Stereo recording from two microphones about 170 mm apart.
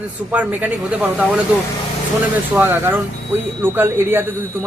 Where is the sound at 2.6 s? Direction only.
10° right (ahead or behind).